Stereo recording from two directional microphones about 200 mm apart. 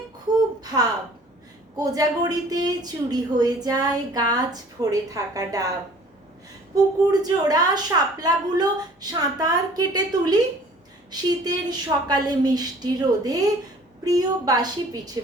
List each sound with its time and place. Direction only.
0.6 s a sound: 20° right (ahead or behind)
1.7 s speech: 20° right (ahead or behind)
7.1 s speech: 20° right (ahead or behind)